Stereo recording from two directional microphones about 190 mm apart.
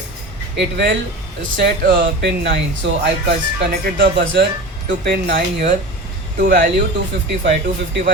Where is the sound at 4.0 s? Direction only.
60° right (ahead or behind).